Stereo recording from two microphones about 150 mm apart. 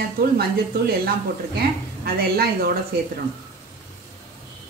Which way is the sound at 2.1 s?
90° right.